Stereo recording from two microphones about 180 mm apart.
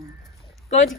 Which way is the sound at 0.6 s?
40° left (ahead or behind).